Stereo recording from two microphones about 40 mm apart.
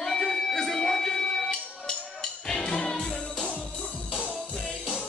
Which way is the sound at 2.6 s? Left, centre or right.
Left.